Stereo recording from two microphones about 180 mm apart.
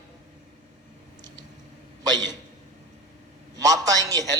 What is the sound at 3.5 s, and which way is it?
Speech, 20° right (ahead or behind).